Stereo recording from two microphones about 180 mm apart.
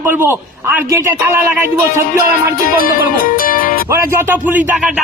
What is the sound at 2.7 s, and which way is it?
Music, 50° left (ahead or behind).